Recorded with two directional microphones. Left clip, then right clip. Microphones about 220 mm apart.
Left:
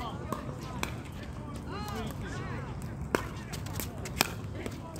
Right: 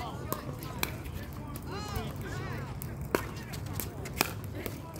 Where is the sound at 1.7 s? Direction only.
50° right (ahead or behind).